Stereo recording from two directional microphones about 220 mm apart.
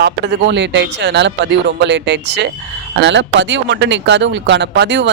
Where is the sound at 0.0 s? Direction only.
55° right (ahead or behind).